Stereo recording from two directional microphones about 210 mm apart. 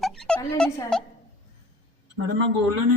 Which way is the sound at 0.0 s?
Centre (ahead or behind).